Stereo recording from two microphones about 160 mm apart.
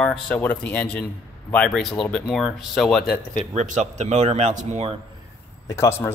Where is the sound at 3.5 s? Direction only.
45° right (ahead or behind).